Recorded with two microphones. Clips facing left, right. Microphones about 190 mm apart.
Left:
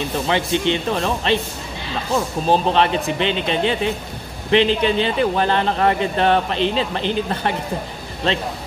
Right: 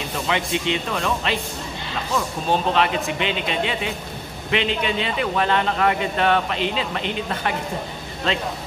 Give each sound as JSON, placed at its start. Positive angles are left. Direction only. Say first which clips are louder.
{"t": 0.3, "sound": "a man's voice", "louder": "left 3 dB", "side_deg": 30}